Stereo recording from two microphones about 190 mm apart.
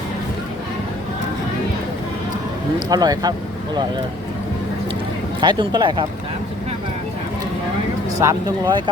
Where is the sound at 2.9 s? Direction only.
20° right (ahead or behind).